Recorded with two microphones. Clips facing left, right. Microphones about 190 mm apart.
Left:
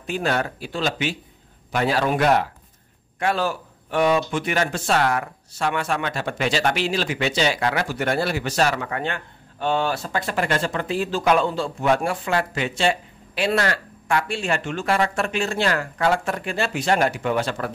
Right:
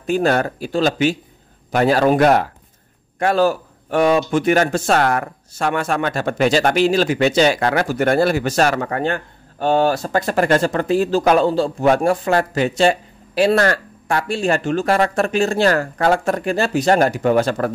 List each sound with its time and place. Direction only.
0.0 s speech: 45° right (ahead or behind)